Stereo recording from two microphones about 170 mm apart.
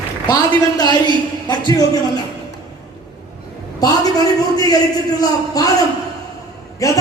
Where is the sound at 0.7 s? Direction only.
25° left (ahead or behind).